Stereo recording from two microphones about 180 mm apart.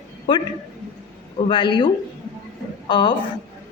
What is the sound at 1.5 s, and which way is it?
A woman's voice, 25° left (ahead or behind).